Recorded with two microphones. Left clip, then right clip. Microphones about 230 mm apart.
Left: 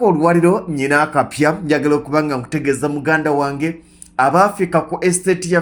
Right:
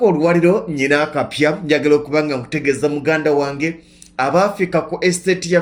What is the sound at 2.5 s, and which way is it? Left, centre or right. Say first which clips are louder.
Speech: right 1 dB; left.